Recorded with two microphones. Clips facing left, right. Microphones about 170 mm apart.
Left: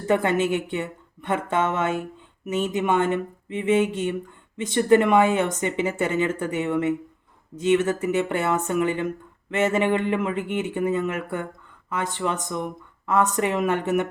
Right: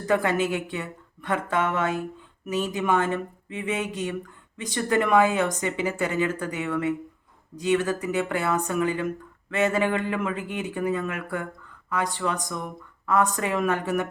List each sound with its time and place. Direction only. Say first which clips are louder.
0.0 s speech: left 2 dB; 25° left (ahead or behind)